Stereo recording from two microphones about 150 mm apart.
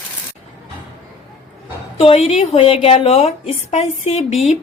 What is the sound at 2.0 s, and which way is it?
Speech, 40° left (ahead or behind).